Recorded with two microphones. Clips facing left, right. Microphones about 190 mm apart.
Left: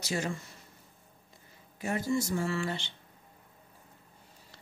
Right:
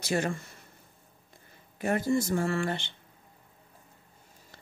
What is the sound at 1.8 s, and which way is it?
Speech, 55° right (ahead or behind).